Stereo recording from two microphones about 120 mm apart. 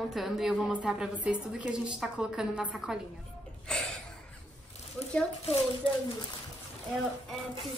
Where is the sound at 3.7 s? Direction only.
5° left (ahead or behind).